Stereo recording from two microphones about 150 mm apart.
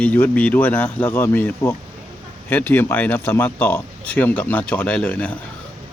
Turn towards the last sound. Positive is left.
turn(degrees=10)  # may be behind; listen again after turning